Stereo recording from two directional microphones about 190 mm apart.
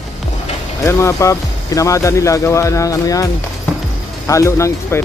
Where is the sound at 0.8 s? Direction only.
15° left (ahead or behind).